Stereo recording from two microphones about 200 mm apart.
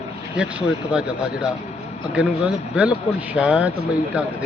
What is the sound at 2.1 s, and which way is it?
Speech, 5° right (ahead or behind).